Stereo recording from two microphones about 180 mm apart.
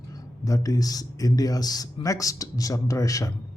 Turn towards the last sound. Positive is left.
turn(degrees=20)  # may be behind; listen again after turning